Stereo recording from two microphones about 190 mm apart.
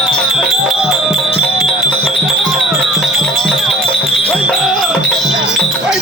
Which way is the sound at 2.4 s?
Centre (ahead or behind).